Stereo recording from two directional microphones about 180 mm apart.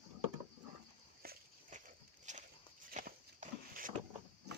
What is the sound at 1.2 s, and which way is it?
Walk, 55° right (ahead or behind).